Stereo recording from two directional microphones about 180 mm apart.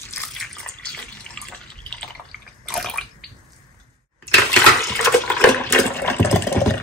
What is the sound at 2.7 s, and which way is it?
Bathtub, centre (ahead or behind).